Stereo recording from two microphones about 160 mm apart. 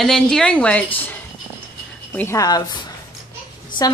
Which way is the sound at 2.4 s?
25° left (ahead or behind).